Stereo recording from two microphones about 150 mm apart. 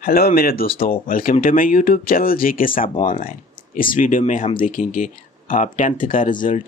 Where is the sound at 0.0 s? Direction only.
80° left.